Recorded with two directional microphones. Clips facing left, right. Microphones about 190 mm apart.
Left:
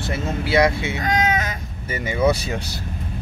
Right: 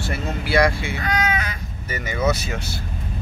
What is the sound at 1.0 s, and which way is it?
Crow, 40° left (ahead or behind).